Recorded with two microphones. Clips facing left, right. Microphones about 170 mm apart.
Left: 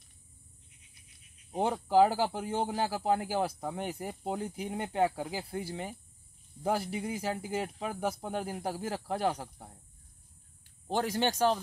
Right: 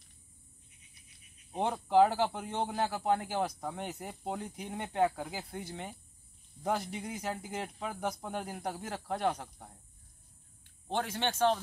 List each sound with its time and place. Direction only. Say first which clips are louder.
1.6 s speech: left 1 dB; 5° left (ahead or behind)
3.0 s speech: left 1 dB; 30° left (ahead or behind)
3.3 s speech: left 2 dB; 10° left (ahead or behind)
11.0 s speech: left 2 dB; 40° left (ahead or behind)